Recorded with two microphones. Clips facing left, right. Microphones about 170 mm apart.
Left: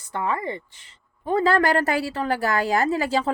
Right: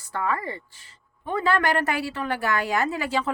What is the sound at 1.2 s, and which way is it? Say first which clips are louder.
A woman's voice: left 4 dB; 35° left (ahead or behind).